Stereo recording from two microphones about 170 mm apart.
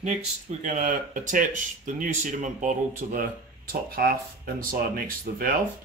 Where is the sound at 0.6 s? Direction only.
50° right (ahead or behind).